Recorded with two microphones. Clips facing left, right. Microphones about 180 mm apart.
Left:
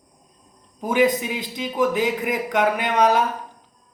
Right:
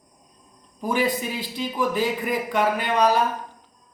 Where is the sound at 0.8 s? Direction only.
20° left (ahead or behind).